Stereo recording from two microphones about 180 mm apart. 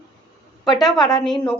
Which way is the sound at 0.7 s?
Centre (ahead or behind).